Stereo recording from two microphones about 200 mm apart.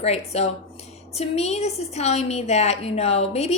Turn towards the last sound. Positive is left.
turn(degrees=30)  # may be behind; listen again after turning